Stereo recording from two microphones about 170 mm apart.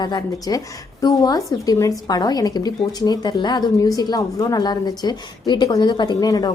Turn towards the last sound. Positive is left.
turn(degrees=20)  # may be behind; listen again after turning